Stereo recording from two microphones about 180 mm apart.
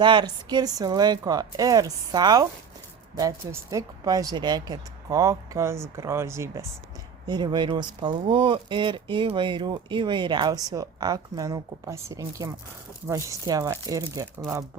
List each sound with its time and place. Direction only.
0.0 s speech: 25° right (ahead or behind)
3.5 s speech: 20° right (ahead or behind)